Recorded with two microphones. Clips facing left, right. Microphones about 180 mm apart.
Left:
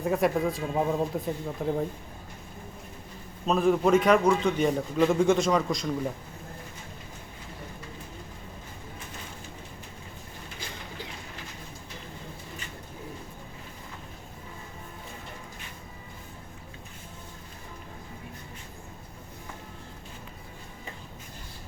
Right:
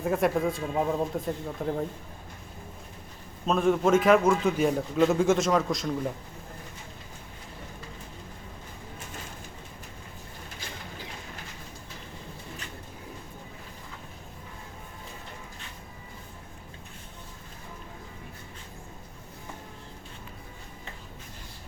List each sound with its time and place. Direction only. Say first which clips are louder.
0.0 s a man's voice: even; centre (ahead or behind)
3.4 s a man's voice: even; centre (ahead or behind)